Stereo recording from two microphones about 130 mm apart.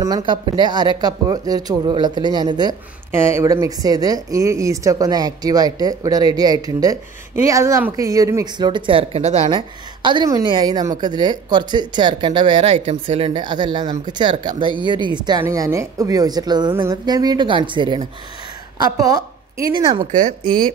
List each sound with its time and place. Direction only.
0.0 s speech: 35° right (ahead or behind)
3.1 s speech: 20° right (ahead or behind); by 12.6 s 35° right (ahead or behind)
12.6 s speech: 50° right (ahead or behind); by 15.4 s 35° right (ahead or behind)
15.4 s speech: 25° right (ahead or behind)
16.7 s a woman's voice: 20° right (ahead or behind)
20.1 s speech: 75° right (ahead or behind)